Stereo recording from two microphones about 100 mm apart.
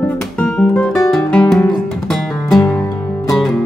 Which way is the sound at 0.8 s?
Centre (ahead or behind).